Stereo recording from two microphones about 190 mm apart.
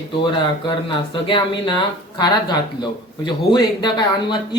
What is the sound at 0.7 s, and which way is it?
Speech, 25° left (ahead or behind).